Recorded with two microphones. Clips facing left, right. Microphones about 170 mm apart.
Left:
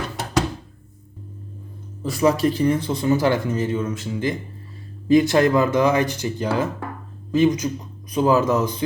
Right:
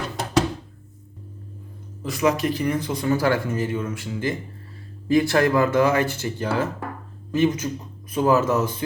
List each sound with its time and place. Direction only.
2.0 s speech: 35° left (ahead or behind); by 8.8 s 15° left (ahead or behind)